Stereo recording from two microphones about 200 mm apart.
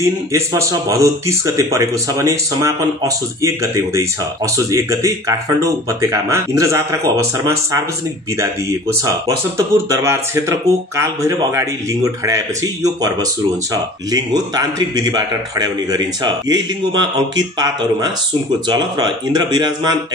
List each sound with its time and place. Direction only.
0.0 s speech: 15° right (ahead or behind)
8.4 s a man's voice: 15° right (ahead or behind)